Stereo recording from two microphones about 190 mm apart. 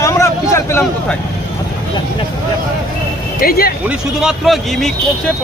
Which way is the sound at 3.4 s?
50° left (ahead or behind).